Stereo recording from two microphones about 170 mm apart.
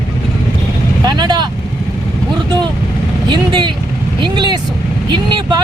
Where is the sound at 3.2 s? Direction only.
25° right (ahead or behind).